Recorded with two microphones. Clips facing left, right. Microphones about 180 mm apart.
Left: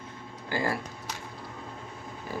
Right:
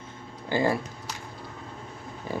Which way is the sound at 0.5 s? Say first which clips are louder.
Right 5 dB; 25° right (ahead or behind).